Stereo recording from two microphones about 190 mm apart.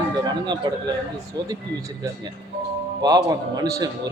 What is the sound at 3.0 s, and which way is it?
Speech, 20° right (ahead or behind).